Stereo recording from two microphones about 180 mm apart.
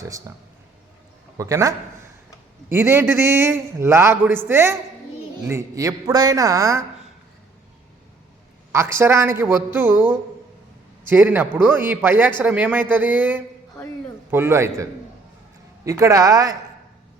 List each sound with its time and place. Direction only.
0.0 s a man's voice: 15° right (ahead or behind)
1.4 s a man's voice: 20° right (ahead or behind)
8.7 s a man's voice: 15° right (ahead or behind)